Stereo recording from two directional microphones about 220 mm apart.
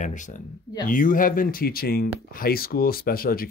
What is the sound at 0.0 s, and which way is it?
Speech, 35° left (ahead or behind).